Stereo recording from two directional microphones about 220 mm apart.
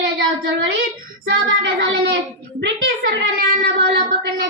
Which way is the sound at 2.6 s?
55° right (ahead or behind).